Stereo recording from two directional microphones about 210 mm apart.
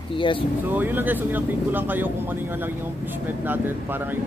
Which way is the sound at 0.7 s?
10° right (ahead or behind).